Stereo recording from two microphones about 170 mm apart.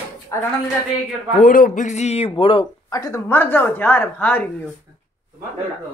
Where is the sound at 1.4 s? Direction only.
50° left (ahead or behind); by 4.5 s 10° left (ahead or behind).